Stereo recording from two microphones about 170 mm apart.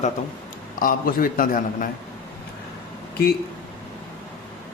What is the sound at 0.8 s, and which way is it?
A man's voice, 55° left (ahead or behind).